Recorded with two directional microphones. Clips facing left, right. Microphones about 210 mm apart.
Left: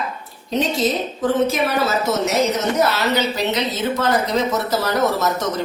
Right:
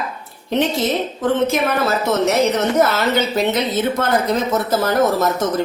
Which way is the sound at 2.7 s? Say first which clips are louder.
Right 2 dB; 50° right (ahead or behind).